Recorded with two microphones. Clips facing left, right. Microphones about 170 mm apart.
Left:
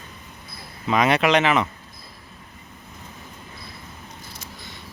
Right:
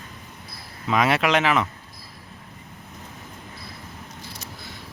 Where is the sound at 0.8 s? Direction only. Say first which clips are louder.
Left 2 dB; centre (ahead or behind).